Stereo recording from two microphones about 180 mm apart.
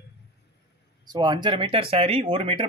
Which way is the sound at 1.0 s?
25° right (ahead or behind).